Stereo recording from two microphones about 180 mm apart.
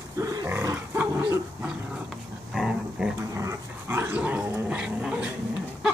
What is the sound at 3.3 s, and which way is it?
Dog, 15° right (ahead or behind).